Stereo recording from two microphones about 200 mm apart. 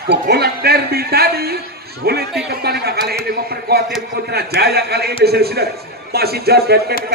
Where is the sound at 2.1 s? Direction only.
50° right (ahead or behind).